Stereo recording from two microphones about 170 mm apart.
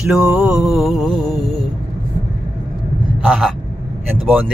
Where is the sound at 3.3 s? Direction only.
Centre (ahead or behind).